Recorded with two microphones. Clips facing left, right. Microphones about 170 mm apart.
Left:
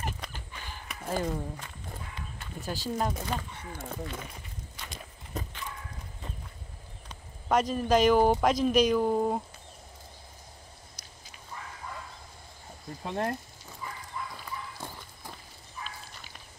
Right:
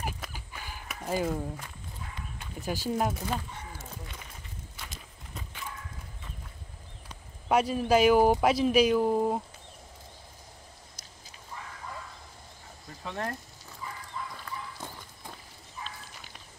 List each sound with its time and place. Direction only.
0.0 s a sound: 5° right (ahead or behind)
2.3 s speech: 15° right (ahead or behind)
7.4 s speech: 10° right (ahead or behind)
13.0 s speech: 25° left (ahead or behind)